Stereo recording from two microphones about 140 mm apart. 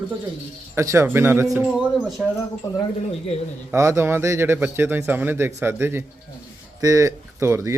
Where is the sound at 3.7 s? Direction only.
20° right (ahead or behind).